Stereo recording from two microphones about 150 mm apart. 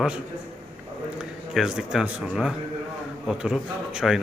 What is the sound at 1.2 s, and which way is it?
A man's voice, 5° right (ahead or behind).